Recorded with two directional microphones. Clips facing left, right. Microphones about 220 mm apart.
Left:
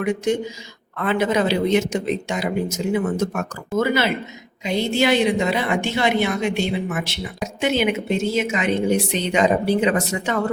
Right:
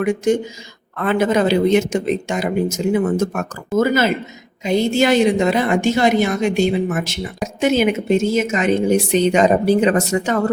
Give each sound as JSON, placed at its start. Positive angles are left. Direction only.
{"t": 0.0, "sound": "a woman's voice", "side_deg": -50}